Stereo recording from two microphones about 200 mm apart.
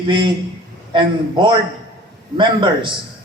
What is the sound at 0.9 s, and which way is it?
A man's voice, 25° right (ahead or behind).